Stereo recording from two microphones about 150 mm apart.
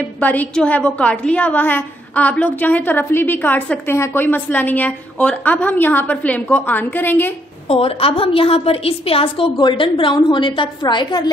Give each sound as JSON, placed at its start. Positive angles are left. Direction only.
{"t": 0.2, "sound": "a woman's voice", "side_deg": 10}
{"t": 7.6, "sound": "a woman's voice", "side_deg": 40}